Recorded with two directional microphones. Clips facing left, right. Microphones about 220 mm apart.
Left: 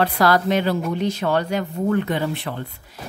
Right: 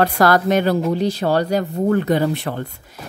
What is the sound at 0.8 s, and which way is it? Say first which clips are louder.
Speech: right 3 dB; 35° right (ahead or behind).